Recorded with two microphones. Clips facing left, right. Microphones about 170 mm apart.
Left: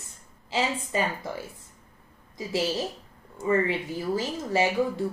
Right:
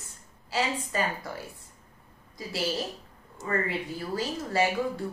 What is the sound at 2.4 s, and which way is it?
Speech, 20° left (ahead or behind).